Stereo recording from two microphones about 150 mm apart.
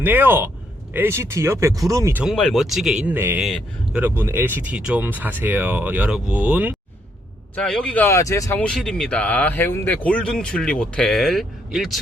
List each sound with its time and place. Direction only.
0.0 s speech: 15° right (ahead or behind)
2.2 s speech: 5° left (ahead or behind)
3.4 s speech: centre (ahead or behind)
4.0 s speech: 15° right (ahead or behind)
7.5 s speech: 5° left (ahead or behind)
8.6 s speech: 5° left (ahead or behind)